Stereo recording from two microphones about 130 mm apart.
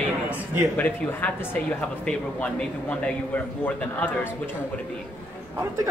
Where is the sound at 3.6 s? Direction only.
10° left (ahead or behind).